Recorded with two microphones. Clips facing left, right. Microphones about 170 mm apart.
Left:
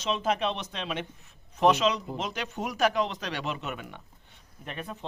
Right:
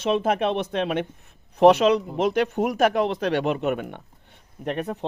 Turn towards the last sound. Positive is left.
turn(degrees=-70)  # may be behind; listen again after turning